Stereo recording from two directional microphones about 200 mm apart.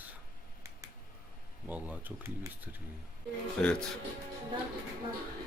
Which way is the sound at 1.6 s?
10° right (ahead or behind).